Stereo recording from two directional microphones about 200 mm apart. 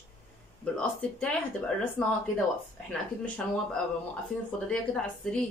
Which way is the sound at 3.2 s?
5° left (ahead or behind).